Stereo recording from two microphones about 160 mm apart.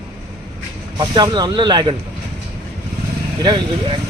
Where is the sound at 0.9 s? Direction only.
25° right (ahead or behind).